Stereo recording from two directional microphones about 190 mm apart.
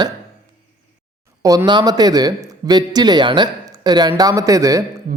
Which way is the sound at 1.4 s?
20° right (ahead or behind).